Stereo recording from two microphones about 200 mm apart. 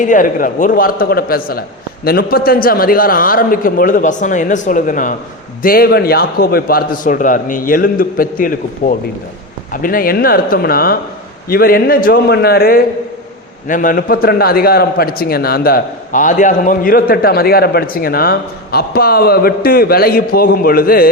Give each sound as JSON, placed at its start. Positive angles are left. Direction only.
{"t": 0.0, "sound": "a man's voice", "side_deg": 40}